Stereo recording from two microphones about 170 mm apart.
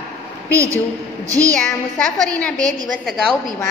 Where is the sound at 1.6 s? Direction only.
5° left (ahead or behind).